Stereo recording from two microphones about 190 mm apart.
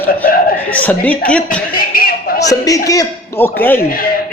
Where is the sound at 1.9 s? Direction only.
50° left (ahead or behind).